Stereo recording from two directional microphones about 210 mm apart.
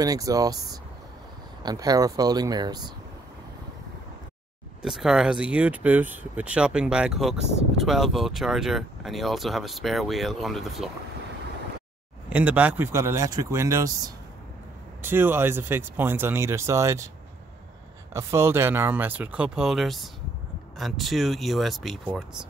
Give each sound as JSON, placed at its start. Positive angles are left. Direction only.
{"t": 0.0, "sound": "speech", "side_deg": -15}
{"t": 4.8, "sound": "speech", "side_deg": 0}
{"t": 12.3, "sound": "speech", "side_deg": -5}
{"t": 18.1, "sound": "speech", "side_deg": -10}